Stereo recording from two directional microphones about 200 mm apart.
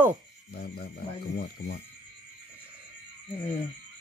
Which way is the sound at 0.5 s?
50° left (ahead or behind).